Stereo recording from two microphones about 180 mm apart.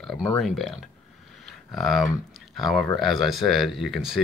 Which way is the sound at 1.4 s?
Centre (ahead or behind).